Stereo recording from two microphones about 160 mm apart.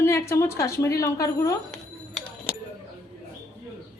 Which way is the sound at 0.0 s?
15° left (ahead or behind).